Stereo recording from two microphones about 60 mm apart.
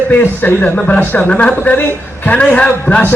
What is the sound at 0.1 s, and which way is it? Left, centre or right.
A man's voice, left.